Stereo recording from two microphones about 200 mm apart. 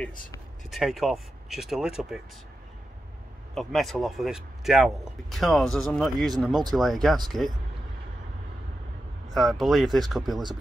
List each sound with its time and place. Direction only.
0.7 s speech: centre (ahead or behind)
3.5 s speech: centre (ahead or behind)
9.3 s speech: centre (ahead or behind)